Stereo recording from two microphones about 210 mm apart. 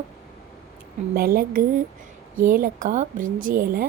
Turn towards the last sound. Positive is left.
turn(degrees=-45)  # may be behind; listen again after turning